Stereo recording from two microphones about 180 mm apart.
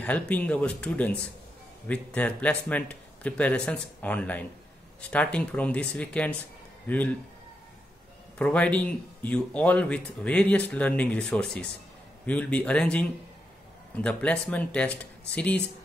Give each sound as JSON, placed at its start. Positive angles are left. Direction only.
{"t": 0.0, "sound": "speech", "side_deg": 10}
{"t": 8.4, "sound": "speech", "side_deg": 5}